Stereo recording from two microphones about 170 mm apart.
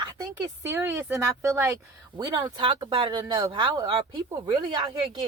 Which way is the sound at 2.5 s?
30° right (ahead or behind).